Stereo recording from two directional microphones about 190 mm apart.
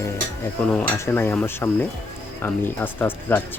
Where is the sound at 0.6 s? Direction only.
10° left (ahead or behind).